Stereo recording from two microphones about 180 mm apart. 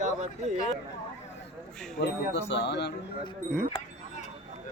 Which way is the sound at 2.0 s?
75° left (ahead or behind).